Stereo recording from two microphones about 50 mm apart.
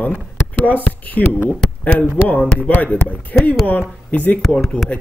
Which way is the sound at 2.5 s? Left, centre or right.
Left.